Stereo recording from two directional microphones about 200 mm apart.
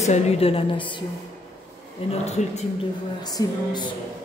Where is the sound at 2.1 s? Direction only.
35° left (ahead or behind).